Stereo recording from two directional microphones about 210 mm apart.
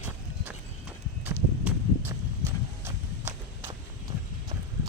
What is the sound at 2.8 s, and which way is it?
Walk, 10° right (ahead or behind).